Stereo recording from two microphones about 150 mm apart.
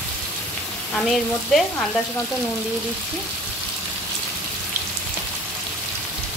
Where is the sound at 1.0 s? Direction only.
Centre (ahead or behind).